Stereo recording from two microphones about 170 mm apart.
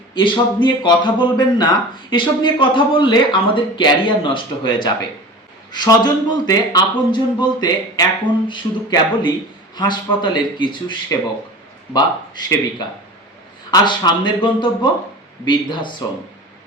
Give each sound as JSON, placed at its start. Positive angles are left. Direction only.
{"t": 0.1, "sound": "a man's voice", "side_deg": 30}
{"t": 11.9, "sound": "a man's voice", "side_deg": 25}
{"t": 13.7, "sound": "a man's voice", "side_deg": 25}